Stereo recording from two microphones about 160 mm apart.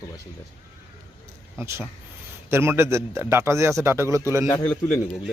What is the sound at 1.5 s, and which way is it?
A man's voice, 15° right (ahead or behind).